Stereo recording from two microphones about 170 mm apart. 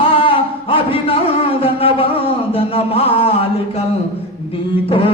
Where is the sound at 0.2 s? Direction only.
30° left (ahead or behind).